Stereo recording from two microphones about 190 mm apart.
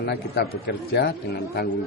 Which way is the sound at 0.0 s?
55° left (ahead or behind).